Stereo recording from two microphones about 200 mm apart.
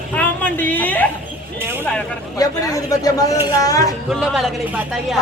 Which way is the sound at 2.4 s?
15° left (ahead or behind).